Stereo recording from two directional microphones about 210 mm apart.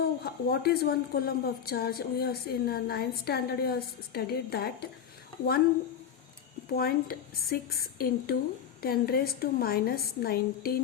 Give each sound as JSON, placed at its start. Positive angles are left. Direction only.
{"t": 0.0, "sound": "a woman's voice", "side_deg": 50}
{"t": 6.7, "sound": "a woman's voice", "side_deg": 45}